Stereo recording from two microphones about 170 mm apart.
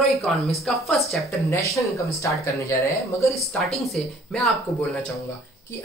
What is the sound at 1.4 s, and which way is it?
Speech, 20° left (ahead or behind).